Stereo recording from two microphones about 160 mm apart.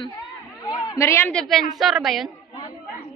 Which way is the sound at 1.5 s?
Centre (ahead or behind).